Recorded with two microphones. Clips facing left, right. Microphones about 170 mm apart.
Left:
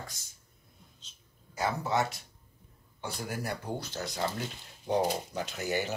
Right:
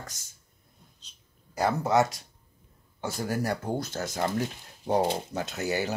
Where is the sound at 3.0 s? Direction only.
40° right (ahead or behind).